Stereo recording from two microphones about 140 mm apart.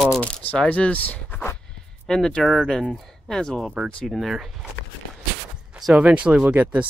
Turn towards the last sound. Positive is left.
turn(degrees=-10)  # may be behind; listen again after turning